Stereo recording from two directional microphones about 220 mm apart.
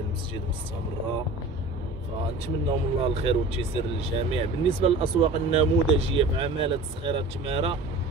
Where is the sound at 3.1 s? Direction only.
25° right (ahead or behind).